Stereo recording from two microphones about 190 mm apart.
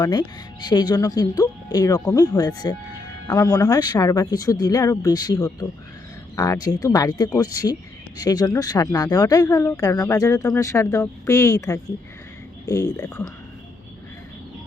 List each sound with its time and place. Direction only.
0.0 s a woman's voice: 20° left (ahead or behind)